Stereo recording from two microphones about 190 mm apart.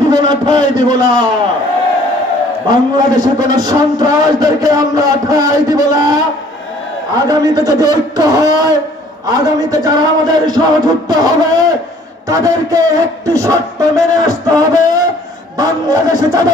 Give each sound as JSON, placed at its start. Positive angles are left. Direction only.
{"t": 0.1, "sound": "a man's voice", "side_deg": -20}
{"t": 2.7, "sound": "a man's voice", "side_deg": -20}
{"t": 7.2, "sound": "a man's voice", "side_deg": -20}